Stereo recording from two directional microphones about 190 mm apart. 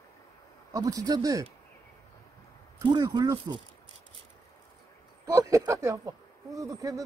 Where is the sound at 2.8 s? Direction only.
20° right (ahead or behind).